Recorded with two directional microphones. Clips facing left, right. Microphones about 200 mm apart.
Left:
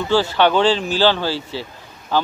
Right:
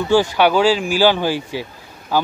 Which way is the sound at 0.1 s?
10° right (ahead or behind).